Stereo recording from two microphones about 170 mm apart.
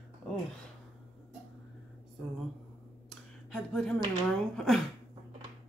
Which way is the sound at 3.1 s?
5° left (ahead or behind).